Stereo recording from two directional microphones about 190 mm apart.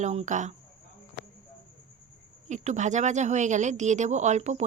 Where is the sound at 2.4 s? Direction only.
40° right (ahead or behind).